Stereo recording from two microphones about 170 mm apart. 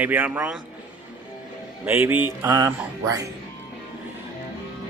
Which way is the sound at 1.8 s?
10° right (ahead or behind).